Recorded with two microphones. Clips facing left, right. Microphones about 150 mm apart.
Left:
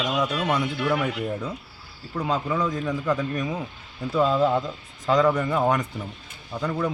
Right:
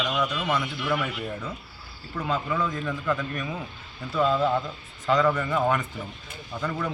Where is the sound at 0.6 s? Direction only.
20° left (ahead or behind).